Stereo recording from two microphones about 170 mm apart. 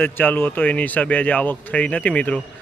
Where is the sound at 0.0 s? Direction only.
10° left (ahead or behind).